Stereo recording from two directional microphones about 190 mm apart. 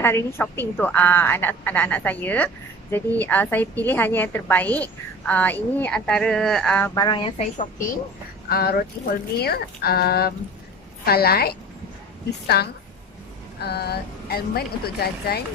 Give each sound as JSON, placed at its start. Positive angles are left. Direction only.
{"t": 0.0, "sound": "a woman's voice", "side_deg": 10}
{"t": 7.0, "sound": "a woman's voice", "side_deg": 25}
{"t": 8.5, "sound": "a woman's voice", "side_deg": 55}
{"t": 12.6, "sound": "speech", "side_deg": 55}